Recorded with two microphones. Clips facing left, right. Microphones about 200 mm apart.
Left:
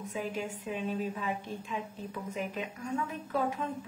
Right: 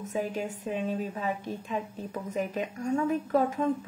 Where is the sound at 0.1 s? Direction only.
40° right (ahead or behind).